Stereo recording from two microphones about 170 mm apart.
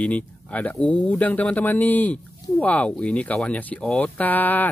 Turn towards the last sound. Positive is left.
turn(degrees=10)  # may be behind; listen again after turning